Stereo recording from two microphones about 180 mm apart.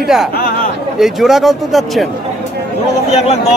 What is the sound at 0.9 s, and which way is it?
A man's voice, centre (ahead or behind).